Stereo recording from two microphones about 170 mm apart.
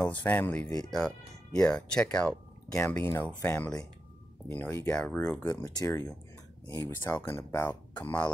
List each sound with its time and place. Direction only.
0.0 s speech: 10° left (ahead or behind)
0.7 s speech: 25° left (ahead or behind)
1.6 s speech: 5° left (ahead or behind)